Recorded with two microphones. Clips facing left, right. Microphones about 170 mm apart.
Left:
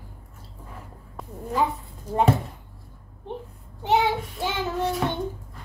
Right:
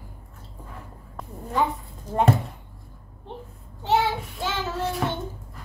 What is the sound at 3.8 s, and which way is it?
Child singing, 15° left (ahead or behind).